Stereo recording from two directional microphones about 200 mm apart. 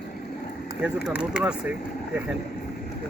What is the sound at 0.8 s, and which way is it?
Speech, 5° right (ahead or behind).